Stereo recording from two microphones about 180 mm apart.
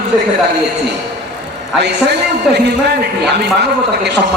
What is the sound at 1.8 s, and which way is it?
A man's voice, 70° right (ahead or behind).